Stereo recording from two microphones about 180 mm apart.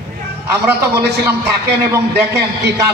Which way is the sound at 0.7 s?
65° right (ahead or behind).